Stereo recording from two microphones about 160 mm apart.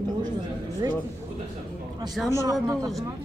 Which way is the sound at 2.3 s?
20° right (ahead or behind).